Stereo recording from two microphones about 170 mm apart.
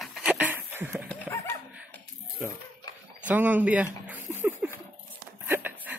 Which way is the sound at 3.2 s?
10° right (ahead or behind).